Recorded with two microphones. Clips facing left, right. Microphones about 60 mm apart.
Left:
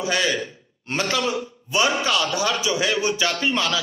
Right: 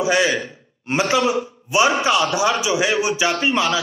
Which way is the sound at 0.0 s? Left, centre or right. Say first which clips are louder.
Right 5 dB; right.